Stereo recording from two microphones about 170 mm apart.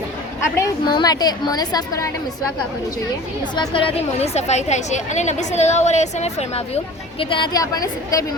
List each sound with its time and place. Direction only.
0.5 s a woman's voice: 20° left (ahead or behind)
3.5 s a woman's voice: 30° left (ahead or behind)
7.2 s a woman's voice: 30° left (ahead or behind)